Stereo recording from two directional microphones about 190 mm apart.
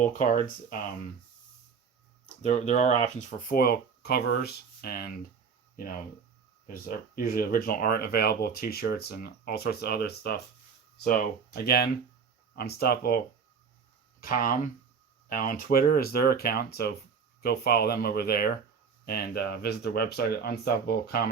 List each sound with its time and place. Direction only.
0.0 s speech: 40° left (ahead or behind)
2.3 s speech: 40° left (ahead or behind); by 21.2 s 55° left (ahead or behind)